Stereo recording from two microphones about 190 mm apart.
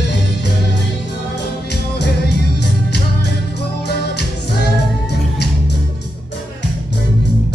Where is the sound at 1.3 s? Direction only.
60° left (ahead or behind).